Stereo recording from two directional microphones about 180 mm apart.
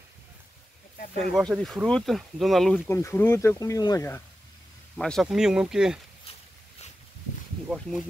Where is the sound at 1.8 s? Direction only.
Centre (ahead or behind).